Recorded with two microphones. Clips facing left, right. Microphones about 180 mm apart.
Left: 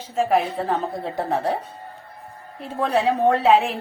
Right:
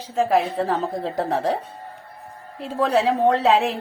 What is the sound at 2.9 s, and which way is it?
Speech, 90° right.